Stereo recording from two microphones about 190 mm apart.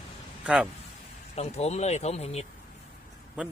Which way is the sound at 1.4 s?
35° left (ahead or behind).